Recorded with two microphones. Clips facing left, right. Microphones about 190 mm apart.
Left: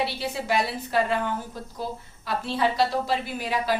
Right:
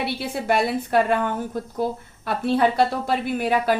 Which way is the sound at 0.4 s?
55° right (ahead or behind).